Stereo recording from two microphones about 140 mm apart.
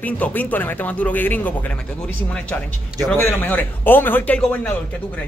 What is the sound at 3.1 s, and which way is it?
Speech, 15° left (ahead or behind).